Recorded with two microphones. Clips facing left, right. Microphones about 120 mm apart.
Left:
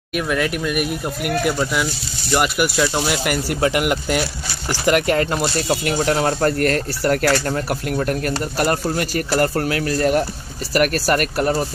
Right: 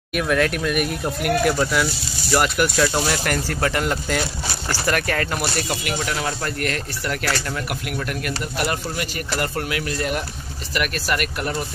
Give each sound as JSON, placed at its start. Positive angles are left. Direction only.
{"t": 0.1, "sound": "speech", "side_deg": 0}
{"t": 5.9, "sound": "speech", "side_deg": 40}